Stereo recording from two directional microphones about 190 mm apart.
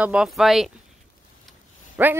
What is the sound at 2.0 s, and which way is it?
Speech, 10° right (ahead or behind).